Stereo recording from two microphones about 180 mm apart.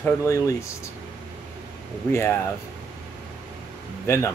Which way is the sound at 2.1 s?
15° left (ahead or behind).